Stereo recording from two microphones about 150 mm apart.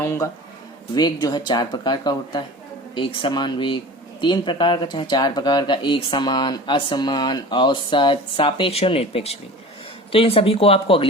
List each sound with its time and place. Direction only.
0.0 s speech: 15° left (ahead or behind)
0.9 s speech: 30° left (ahead or behind)